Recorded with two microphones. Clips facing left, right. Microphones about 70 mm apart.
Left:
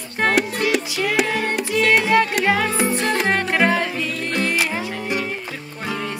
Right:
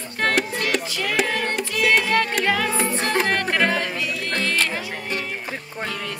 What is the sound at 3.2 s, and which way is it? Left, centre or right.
Music, centre.